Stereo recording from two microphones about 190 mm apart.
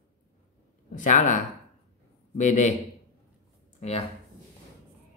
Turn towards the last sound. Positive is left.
turn(degrees=30)  # may be behind; listen again after turning